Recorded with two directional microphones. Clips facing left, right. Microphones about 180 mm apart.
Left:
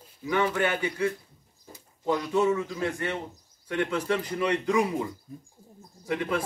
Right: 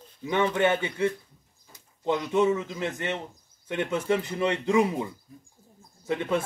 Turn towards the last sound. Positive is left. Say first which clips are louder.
# right 2 dB
turn(degrees=-25)  # may be behind; listen again after turning